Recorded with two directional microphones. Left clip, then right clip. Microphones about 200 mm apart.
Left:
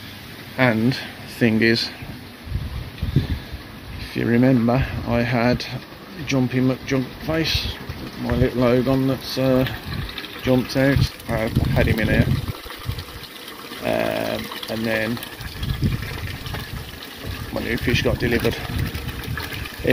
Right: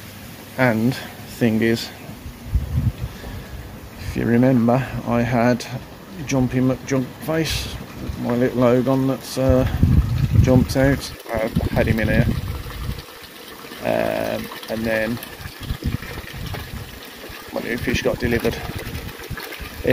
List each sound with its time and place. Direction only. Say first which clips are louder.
0.6 s speech: even; centre (ahead or behind)
4.1 s speech: right 1 dB; centre (ahead or behind)
13.8 s speech: right 1 dB; 5° right (ahead or behind)
15.8 s water: left 3 dB; 25° left (ahead or behind)
17.6 s speech: even; centre (ahead or behind)